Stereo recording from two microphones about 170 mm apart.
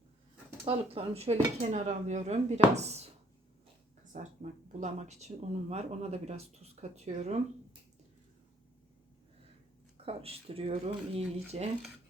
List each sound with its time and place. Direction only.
0.6 s speech: 35° right (ahead or behind)
4.1 s speech: 45° right (ahead or behind)
10.1 s speech: 35° right (ahead or behind)